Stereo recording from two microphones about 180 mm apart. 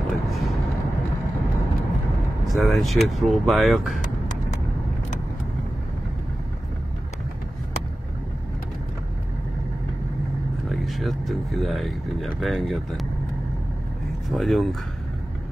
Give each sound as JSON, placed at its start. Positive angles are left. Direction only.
{"t": 0.1, "sound": "vehicle", "side_deg": 0}
{"t": 2.4, "sound": "speech", "side_deg": 0}
{"t": 10.7, "sound": "speech", "side_deg": 0}
{"t": 14.3, "sound": "speech", "side_deg": 0}